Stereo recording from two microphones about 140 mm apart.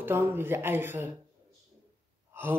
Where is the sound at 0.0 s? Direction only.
15° right (ahead or behind).